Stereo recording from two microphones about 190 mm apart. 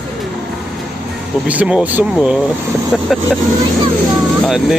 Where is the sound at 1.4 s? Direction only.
5° right (ahead or behind).